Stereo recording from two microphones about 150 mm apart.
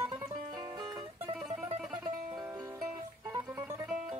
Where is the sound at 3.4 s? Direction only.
15° right (ahead or behind).